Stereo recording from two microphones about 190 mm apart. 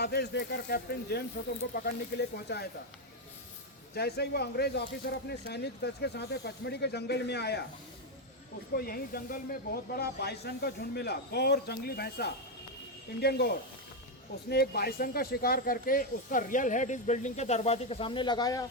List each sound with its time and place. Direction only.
0.0 s speech: 60° left (ahead or behind)
3.9 s speech: 55° left (ahead or behind)
8.7 s speech: 50° left (ahead or behind); by 18.6 s 20° left (ahead or behind)